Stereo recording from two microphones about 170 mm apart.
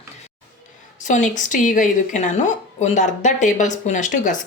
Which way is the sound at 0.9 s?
45° left (ahead or behind).